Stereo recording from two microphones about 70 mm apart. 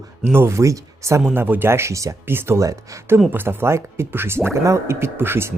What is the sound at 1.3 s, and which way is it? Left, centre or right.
Speech, right.